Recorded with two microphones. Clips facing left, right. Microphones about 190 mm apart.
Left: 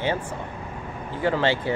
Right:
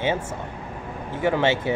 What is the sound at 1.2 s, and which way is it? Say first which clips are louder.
Speech: right 1 dB; 20° right (ahead or behind).